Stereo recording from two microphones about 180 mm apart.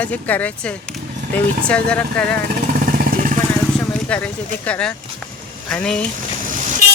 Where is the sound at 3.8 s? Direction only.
5° left (ahead or behind).